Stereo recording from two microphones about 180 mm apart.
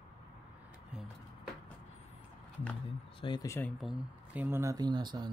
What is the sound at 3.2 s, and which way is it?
Speech, 25° left (ahead or behind).